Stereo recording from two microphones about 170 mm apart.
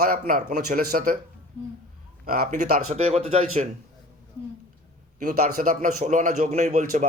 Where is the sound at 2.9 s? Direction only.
40° right (ahead or behind).